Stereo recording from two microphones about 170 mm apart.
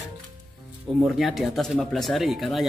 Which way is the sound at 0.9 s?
Centre (ahead or behind).